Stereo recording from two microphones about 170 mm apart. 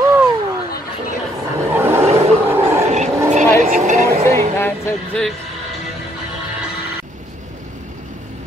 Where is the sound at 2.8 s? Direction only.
40° right (ahead or behind).